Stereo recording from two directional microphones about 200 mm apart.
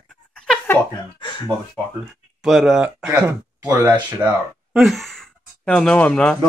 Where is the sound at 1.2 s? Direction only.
20° left (ahead or behind).